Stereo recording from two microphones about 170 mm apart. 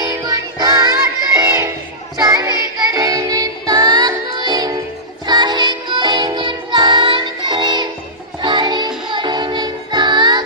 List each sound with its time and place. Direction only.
0.0 s music: 20° right (ahead or behind)
2.1 s child singing: 20° right (ahead or behind)
2.9 s music: 20° right (ahead or behind)